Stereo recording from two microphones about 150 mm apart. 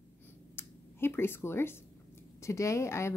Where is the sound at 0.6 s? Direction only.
15° left (ahead or behind).